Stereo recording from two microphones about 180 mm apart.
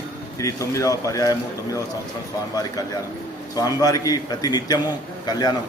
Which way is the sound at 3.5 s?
20° left (ahead or behind).